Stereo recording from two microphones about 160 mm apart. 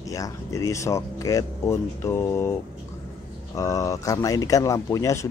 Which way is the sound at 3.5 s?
20° left (ahead or behind).